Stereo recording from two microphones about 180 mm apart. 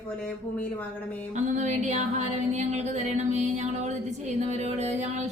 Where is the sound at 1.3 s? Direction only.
40° right (ahead or behind).